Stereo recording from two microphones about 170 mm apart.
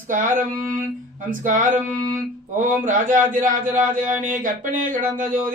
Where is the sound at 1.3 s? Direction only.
50° right (ahead or behind).